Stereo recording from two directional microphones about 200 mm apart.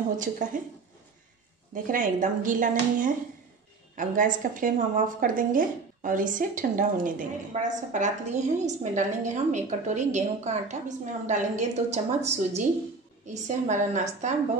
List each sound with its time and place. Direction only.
0.2 s a woman's voice: 40° right (ahead or behind)
1.7 s a woman's voice: 40° right (ahead or behind)